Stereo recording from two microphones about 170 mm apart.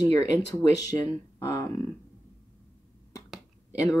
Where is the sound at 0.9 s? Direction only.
20° left (ahead or behind).